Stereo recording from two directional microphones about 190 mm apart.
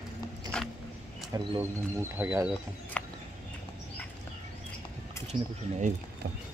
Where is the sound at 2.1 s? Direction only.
10° right (ahead or behind).